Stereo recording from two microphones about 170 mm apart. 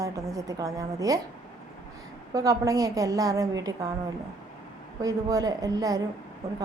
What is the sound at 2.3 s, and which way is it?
A woman's voice, 20° right (ahead or behind).